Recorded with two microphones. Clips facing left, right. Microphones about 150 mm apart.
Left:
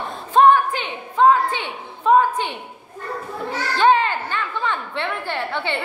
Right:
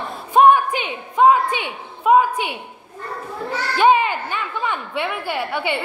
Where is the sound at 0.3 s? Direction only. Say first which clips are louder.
Right 1 dB; 15° right (ahead or behind).